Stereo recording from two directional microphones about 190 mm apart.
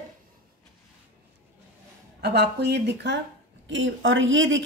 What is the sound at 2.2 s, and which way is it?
Speech, 60° right (ahead or behind).